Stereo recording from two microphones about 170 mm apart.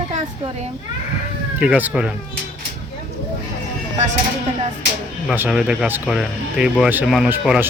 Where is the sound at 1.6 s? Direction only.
10° right (ahead or behind).